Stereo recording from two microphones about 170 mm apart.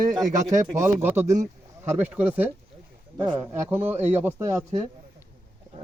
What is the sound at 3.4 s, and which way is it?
Speech, 10° right (ahead or behind).